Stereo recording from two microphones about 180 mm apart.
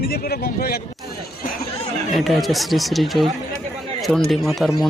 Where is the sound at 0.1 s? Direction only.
60° left (ahead or behind).